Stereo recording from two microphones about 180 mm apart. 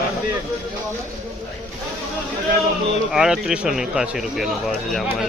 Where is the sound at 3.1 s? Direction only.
5° right (ahead or behind).